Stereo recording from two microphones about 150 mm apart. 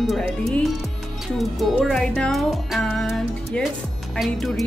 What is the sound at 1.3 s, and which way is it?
Speech, centre (ahead or behind).